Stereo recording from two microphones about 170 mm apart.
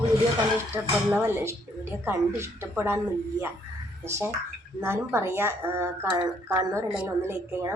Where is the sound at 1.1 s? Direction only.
10° right (ahead or behind).